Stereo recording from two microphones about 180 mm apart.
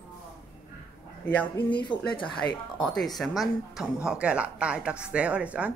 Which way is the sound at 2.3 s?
Centre (ahead or behind).